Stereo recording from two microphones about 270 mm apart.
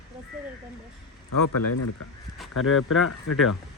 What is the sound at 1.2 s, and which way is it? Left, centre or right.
Speech, left.